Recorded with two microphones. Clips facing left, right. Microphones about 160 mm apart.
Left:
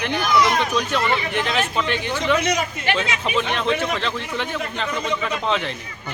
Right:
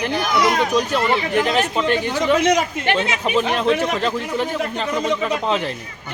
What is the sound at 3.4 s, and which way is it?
Speech, 40° right (ahead or behind).